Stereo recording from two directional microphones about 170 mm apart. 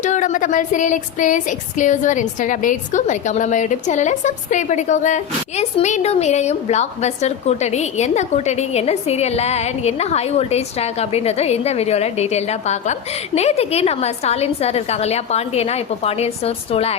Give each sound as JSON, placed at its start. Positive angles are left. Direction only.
{"t": 0.0, "sound": "speech", "side_deg": 45}